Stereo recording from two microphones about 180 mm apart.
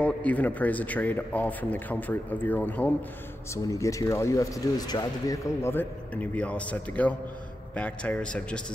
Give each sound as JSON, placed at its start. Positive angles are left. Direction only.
{"t": 0.0, "sound": "speech", "side_deg": 10}